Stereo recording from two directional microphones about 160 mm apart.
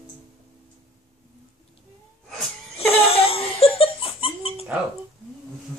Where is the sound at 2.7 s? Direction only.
35° left (ahead or behind).